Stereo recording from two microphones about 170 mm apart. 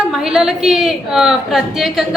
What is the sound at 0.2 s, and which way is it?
A woman's voice, 5° right (ahead or behind).